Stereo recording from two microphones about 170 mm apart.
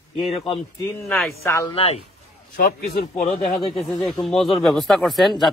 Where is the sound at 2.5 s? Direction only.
65° left (ahead or behind).